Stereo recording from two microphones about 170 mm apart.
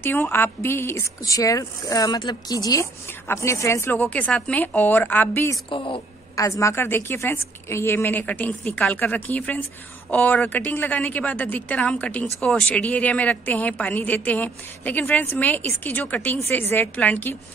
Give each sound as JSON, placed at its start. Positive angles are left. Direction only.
{"t": 0.0, "sound": "speech", "side_deg": 10}
{"t": 5.7, "sound": "a woman's voice", "side_deg": 30}
{"t": 6.3, "sound": "speech", "side_deg": 20}